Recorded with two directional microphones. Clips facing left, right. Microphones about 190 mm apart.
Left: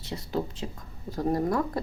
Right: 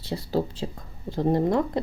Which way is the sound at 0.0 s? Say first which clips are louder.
Right 5 dB; 30° right (ahead or behind).